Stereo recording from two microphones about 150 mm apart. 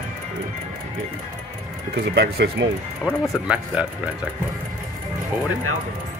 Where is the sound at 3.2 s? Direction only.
5° right (ahead or behind).